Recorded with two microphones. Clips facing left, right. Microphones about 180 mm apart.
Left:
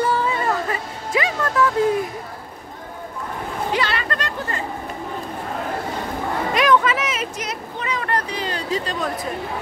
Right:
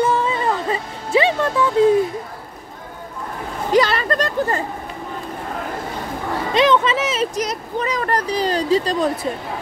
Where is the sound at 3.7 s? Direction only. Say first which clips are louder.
Right 9 dB; 40° right (ahead or behind).